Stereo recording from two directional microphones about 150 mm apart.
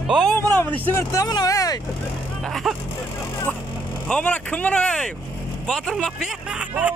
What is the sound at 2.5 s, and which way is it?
Vehicle, centre (ahead or behind).